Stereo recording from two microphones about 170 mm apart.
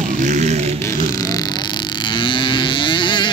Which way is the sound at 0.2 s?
45° right (ahead or behind).